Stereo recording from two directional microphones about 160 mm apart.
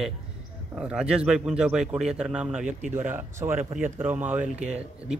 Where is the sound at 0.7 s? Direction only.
5° right (ahead or behind).